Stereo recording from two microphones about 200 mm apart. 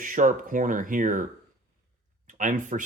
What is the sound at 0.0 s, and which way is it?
Speech, 40° right (ahead or behind).